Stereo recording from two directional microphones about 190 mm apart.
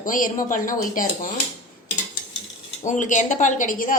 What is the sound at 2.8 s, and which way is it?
Speech, 40° left (ahead or behind).